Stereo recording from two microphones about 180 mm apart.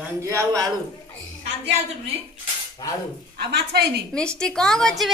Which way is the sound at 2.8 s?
20° left (ahead or behind).